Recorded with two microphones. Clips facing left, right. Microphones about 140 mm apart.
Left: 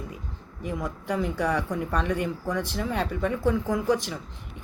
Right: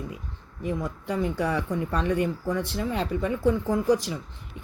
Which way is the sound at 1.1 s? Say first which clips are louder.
Even; 5° right (ahead or behind).